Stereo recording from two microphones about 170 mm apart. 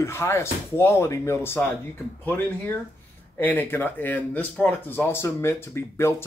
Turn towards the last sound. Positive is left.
turn(degrees=15)  # may be behind; listen again after turning